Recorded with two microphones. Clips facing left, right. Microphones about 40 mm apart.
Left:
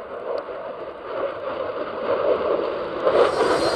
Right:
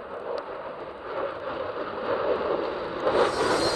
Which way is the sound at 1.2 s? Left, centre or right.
Left.